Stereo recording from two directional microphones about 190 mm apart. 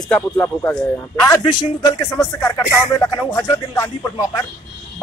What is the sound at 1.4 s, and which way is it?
Speech, 25° left (ahead or behind).